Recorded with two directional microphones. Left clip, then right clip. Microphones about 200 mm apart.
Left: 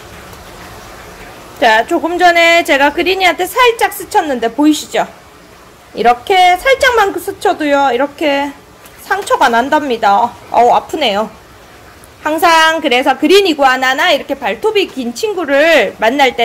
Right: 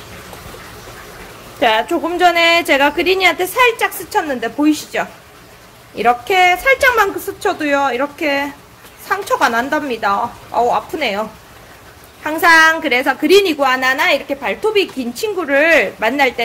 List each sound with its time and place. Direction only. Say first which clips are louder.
1.6 s a woman's voice: left 4 dB; 5° left (ahead or behind)